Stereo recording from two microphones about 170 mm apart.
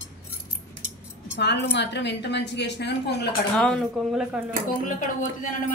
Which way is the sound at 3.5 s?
5° left (ahead or behind).